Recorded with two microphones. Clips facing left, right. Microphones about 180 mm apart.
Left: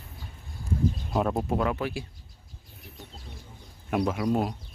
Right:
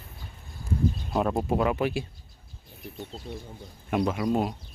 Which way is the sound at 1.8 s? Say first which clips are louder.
Right 4 dB; 20° right (ahead or behind).